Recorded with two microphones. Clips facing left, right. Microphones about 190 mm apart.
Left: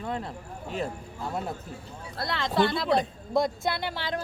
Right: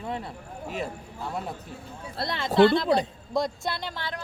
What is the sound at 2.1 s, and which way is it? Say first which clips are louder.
Speech: right 1 dB; 25° right (ahead or behind).